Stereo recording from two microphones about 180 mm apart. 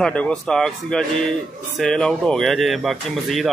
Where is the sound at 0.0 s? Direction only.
5° left (ahead or behind).